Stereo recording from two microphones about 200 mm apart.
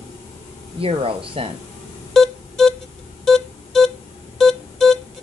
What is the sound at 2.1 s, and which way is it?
Music, centre (ahead or behind).